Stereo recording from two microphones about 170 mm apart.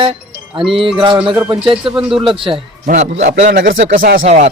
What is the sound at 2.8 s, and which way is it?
Speech, 45° right (ahead or behind).